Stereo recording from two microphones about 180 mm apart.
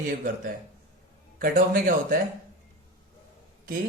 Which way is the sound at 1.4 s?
50° right (ahead or behind).